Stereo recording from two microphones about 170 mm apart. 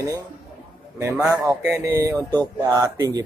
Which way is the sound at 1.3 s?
15° right (ahead or behind).